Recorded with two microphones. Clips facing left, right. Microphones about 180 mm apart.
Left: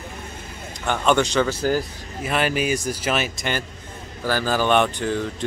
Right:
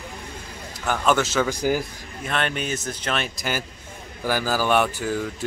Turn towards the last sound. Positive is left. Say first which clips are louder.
# left 2 dB
turn(degrees=-5)  # may be behind; listen again after turning